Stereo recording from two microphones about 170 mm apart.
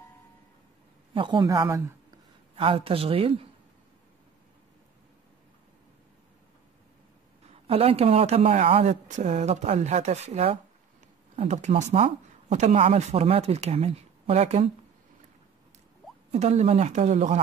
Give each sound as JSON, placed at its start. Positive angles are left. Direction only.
{"t": 1.1, "sound": "a woman's voice", "side_deg": -30}
{"t": 2.5, "sound": "speech", "side_deg": -35}
{"t": 7.6, "sound": "speech", "side_deg": -35}
{"t": 16.3, "sound": "speech", "side_deg": -40}